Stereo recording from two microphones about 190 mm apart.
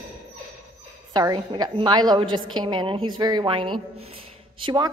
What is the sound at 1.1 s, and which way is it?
A woman's voice, 20° right (ahead or behind).